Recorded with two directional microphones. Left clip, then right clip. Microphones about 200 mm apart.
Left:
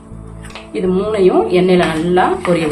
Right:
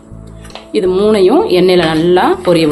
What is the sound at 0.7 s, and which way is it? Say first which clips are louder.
A woman's voice: right 6 dB; 55° right (ahead or behind).